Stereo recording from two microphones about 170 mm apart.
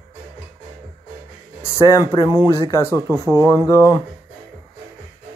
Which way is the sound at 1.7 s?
20° left (ahead or behind).